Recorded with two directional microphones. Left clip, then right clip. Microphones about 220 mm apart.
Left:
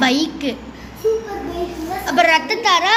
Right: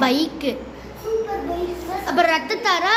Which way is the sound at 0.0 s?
10° right (ahead or behind).